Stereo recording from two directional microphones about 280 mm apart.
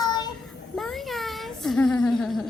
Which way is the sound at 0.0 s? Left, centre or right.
Centre.